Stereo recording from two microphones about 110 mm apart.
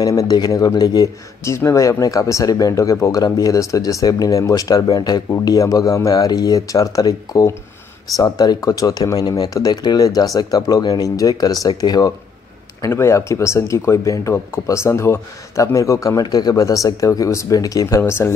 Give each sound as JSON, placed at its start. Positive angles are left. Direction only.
{"t": 0.0, "sound": "speech", "side_deg": 35}